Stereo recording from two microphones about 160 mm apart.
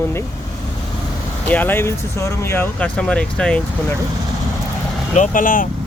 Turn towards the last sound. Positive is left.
turn(degrees=55)  # may be behind; listen again after turning